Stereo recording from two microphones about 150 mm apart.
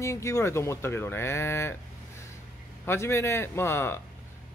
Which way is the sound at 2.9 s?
20° left (ahead or behind).